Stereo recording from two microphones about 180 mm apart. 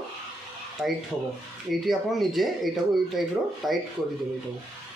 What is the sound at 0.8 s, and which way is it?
Speech, 5° right (ahead or behind).